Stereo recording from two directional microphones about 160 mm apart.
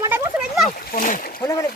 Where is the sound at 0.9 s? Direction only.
55° left (ahead or behind).